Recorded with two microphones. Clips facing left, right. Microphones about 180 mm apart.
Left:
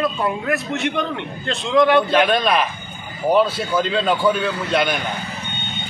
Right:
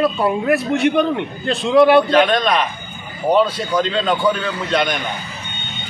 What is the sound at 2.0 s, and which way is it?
A man's voice, 5° left (ahead or behind).